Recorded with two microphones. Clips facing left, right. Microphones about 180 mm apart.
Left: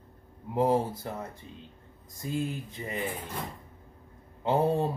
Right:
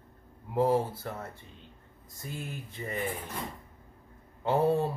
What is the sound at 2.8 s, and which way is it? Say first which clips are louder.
Speech: right 2 dB; 20° left (ahead or behind).